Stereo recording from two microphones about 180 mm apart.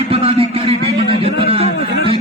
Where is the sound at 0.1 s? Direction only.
30° right (ahead or behind).